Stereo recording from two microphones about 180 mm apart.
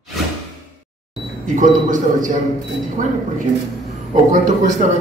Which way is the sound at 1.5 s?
45° right (ahead or behind).